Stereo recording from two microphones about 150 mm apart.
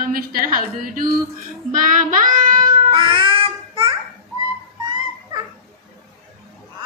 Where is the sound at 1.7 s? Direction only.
65° right (ahead or behind).